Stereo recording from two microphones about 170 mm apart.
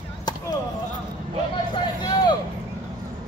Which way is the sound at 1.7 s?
25° left (ahead or behind).